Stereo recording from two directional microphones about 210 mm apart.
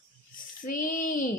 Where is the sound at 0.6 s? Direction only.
40° left (ahead or behind).